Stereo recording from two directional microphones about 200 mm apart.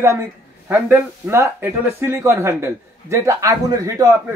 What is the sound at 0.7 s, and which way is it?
Speech, 5° right (ahead or behind).